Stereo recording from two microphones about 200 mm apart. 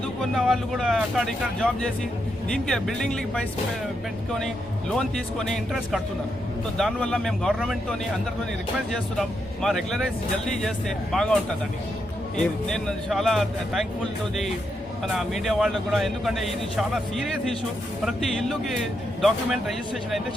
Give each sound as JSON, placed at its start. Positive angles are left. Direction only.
{"t": 0.2, "sound": "speech", "side_deg": 0}
{"t": 4.9, "sound": "speech", "side_deg": 0}
{"t": 12.6, "sound": "speech", "side_deg": 0}
{"t": 15.0, "sound": "speech", "side_deg": 0}
{"t": 18.0, "sound": "speech", "side_deg": 0}